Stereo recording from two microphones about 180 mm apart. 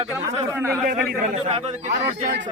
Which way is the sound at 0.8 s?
45° right (ahead or behind).